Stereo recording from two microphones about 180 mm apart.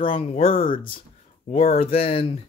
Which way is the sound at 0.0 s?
30° left (ahead or behind).